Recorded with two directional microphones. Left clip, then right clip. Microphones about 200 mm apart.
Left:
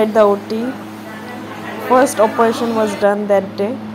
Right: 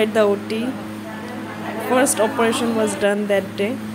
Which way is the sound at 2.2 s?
15° right (ahead or behind).